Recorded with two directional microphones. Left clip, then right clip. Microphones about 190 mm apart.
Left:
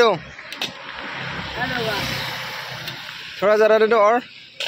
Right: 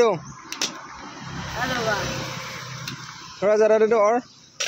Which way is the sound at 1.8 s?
45° right (ahead or behind).